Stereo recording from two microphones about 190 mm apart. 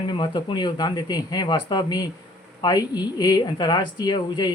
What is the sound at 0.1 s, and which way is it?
Speech, 25° left (ahead or behind).